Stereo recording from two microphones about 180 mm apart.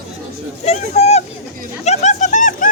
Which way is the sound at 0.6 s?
35° left (ahead or behind).